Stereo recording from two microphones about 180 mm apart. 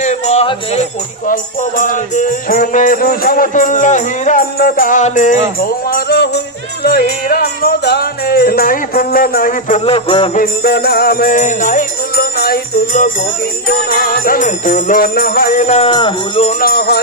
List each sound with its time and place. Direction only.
0.0 s music: 40° left (ahead or behind)
1.2 s music: 50° left (ahead or behind)
5.6 s music: 55° left (ahead or behind)
9.8 s jingle bell: 30° left (ahead or behind)
10.3 s music: 55° left (ahead or behind); by 16.5 s 30° left (ahead or behind)
16.5 s music: 60° left (ahead or behind)